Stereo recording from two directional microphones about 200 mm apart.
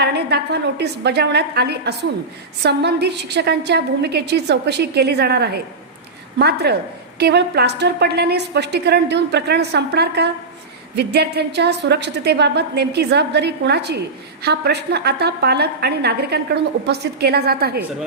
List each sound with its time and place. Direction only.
0.0 s a woman's voice: 55° right (ahead or behind)